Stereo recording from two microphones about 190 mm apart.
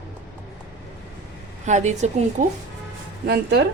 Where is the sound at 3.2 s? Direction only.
55° right (ahead or behind).